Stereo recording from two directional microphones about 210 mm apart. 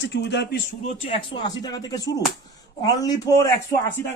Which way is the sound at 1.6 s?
20° left (ahead or behind).